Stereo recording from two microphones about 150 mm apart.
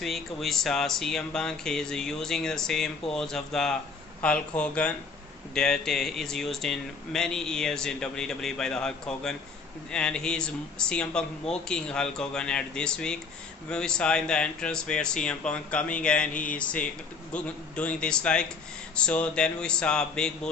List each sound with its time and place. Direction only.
0.0 s speech: centre (ahead or behind)